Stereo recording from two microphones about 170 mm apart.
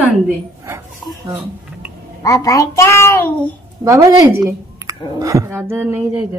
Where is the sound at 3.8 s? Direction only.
20° right (ahead or behind).